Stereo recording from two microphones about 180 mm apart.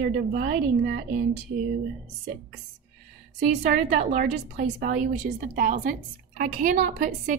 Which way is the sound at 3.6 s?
45° right (ahead or behind).